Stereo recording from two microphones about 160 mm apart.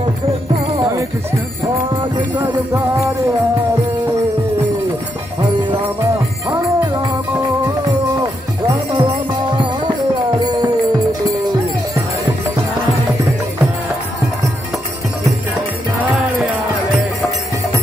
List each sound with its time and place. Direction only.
0.7 s music: 20° right (ahead or behind)
6.5 s music: 25° right (ahead or behind)
8.2 s music: 30° right (ahead or behind)